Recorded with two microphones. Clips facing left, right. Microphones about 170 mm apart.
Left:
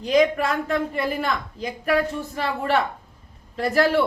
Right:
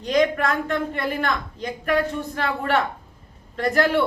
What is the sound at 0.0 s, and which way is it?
A woman's voice, 5° left (ahead or behind).